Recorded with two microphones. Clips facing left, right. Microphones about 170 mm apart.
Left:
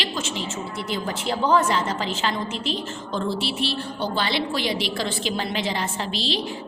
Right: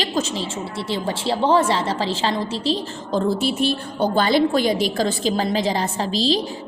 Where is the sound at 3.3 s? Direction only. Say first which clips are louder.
Right 6 dB; 45° right (ahead or behind).